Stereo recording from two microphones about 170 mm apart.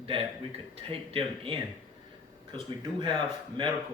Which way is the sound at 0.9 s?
35° right (ahead or behind).